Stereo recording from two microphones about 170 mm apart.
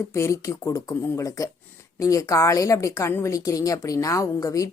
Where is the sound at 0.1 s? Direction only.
15° left (ahead or behind).